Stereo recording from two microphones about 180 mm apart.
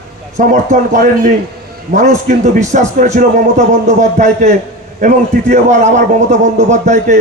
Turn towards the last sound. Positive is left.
turn(degrees=-40)  # may be behind; listen again after turning